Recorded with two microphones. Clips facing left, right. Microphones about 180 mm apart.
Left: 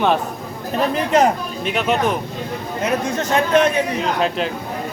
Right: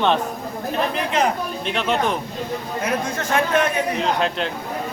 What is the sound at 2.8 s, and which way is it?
Speech, 25° left (ahead or behind).